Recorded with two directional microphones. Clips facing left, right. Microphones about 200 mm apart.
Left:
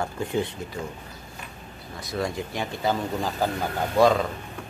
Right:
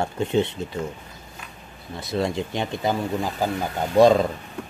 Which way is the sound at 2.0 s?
25° right (ahead or behind).